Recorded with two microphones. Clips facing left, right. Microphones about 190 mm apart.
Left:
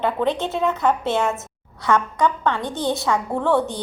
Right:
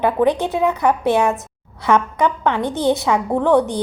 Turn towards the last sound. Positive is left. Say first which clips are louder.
# right 5 dB
turn(degrees=-20)  # may be behind; listen again after turning